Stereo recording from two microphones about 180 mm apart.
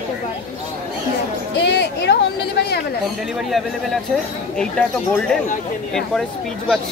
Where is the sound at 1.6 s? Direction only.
70° left (ahead or behind).